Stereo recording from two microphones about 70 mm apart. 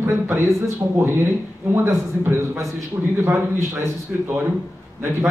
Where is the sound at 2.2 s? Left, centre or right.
Right.